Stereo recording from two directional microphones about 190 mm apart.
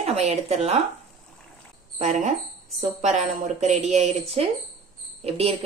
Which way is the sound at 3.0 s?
35° right (ahead or behind).